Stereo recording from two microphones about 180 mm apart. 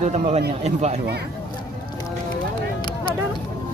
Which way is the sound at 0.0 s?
40° right (ahead or behind).